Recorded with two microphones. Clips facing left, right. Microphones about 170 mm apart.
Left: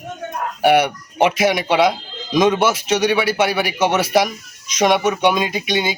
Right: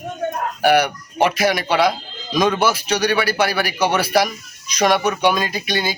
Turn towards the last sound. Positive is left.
turn(degrees=20)  # may be behind; listen again after turning